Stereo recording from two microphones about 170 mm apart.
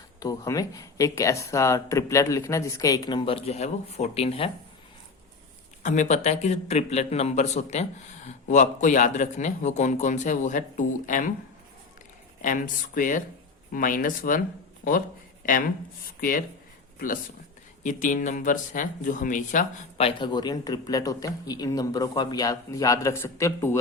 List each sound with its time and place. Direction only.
0.2 s speech: 20° left (ahead or behind)
5.8 s a man's voice: 45° left (ahead or behind)
12.4 s speech: 50° left (ahead or behind)
16.0 s speech: 60° left (ahead or behind)
17.8 s speech: 50° left (ahead or behind)
20.0 s speech: 30° left (ahead or behind); by 23.7 s 15° left (ahead or behind)